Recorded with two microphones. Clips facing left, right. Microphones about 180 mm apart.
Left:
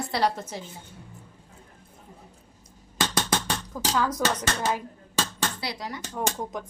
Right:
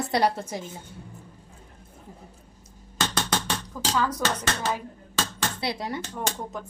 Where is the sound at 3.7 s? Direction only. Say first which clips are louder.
Even; 10° left (ahead or behind).